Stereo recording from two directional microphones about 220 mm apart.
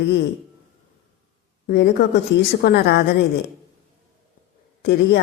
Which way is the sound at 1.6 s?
50° left (ahead or behind).